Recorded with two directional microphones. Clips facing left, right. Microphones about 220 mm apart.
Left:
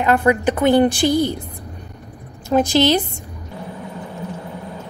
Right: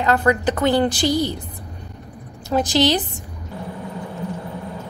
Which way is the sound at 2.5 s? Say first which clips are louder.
Left 4 dB; 20° left (ahead or behind).